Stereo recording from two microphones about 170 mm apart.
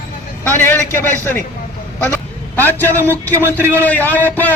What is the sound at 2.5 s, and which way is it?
Speech, 10° left (ahead or behind).